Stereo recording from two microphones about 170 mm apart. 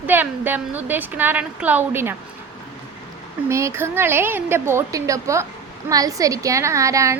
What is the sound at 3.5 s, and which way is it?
A woman's voice, 15° right (ahead or behind).